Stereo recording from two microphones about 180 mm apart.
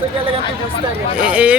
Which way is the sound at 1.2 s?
5° right (ahead or behind).